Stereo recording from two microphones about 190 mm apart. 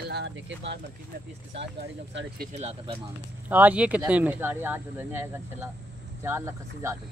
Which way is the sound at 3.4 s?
10° right (ahead or behind).